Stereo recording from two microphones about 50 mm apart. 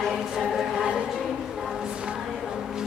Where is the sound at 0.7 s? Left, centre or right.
Centre.